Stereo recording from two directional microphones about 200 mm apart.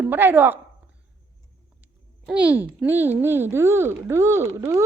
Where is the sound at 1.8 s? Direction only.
5° right (ahead or behind).